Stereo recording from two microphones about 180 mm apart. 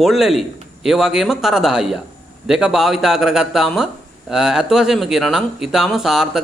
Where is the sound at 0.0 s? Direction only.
Centre (ahead or behind).